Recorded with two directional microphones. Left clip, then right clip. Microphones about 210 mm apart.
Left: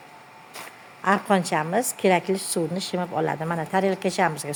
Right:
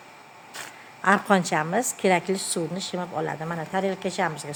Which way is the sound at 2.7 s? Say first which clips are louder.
Left 3 dB; 20° left (ahead or behind).